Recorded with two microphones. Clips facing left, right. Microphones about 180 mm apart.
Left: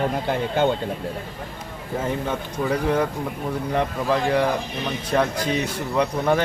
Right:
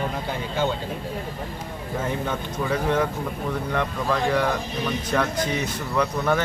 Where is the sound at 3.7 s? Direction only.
30° left (ahead or behind).